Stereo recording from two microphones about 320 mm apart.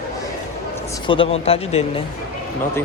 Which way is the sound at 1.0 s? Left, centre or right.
Centre.